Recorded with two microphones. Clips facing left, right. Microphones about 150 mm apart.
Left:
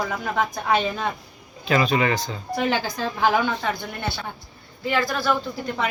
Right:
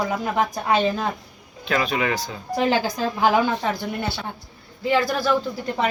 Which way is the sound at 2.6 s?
40° right (ahead or behind).